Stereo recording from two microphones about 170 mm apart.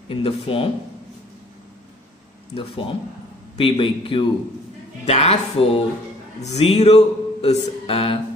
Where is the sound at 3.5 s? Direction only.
30° left (ahead or behind).